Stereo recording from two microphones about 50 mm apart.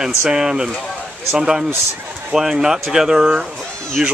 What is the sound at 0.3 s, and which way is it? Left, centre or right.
Speech, centre.